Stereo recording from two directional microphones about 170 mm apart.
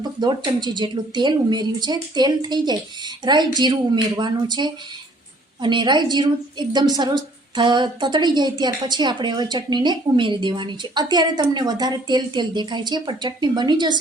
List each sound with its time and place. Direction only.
0.0 s a woman's voice: 25° right (ahead or behind)